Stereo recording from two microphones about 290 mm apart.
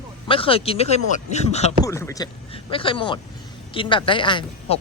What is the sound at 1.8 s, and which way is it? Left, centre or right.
Speech, centre.